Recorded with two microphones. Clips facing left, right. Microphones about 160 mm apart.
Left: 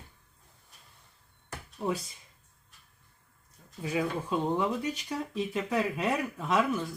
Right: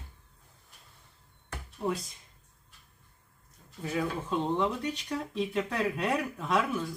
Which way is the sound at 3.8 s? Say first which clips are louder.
Left 1 dB; 10° left (ahead or behind).